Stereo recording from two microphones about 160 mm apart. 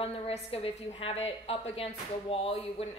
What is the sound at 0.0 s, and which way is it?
A woman's voice, 35° left (ahead or behind).